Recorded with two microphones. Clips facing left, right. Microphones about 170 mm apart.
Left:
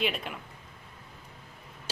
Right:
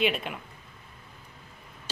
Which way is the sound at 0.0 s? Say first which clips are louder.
Right 4 dB; centre (ahead or behind).